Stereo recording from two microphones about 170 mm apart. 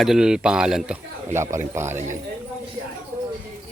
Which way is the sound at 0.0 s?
5° right (ahead or behind).